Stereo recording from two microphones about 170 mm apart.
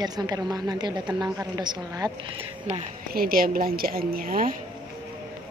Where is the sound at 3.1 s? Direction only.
60° right (ahead or behind).